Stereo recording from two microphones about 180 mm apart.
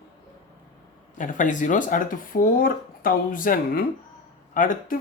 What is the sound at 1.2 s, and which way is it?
Speech, 45° left (ahead or behind).